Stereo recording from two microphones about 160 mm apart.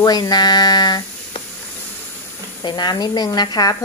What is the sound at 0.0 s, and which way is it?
Speech, 25° left (ahead or behind).